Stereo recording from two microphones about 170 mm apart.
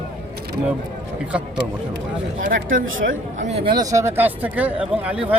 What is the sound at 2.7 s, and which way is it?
Speech, 50° right (ahead or behind).